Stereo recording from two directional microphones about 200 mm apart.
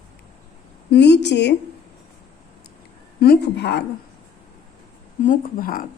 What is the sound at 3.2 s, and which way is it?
Speech, 55° left (ahead or behind).